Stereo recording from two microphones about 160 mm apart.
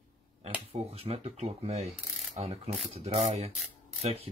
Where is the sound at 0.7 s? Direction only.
40° right (ahead or behind).